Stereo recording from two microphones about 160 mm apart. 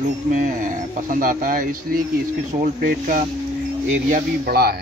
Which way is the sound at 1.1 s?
60° right (ahead or behind).